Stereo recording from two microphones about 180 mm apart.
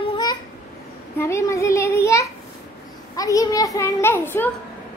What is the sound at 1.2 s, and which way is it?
A child's voice, 15° left (ahead or behind).